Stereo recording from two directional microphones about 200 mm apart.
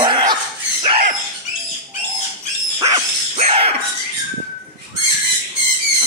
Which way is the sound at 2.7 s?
15° right (ahead or behind).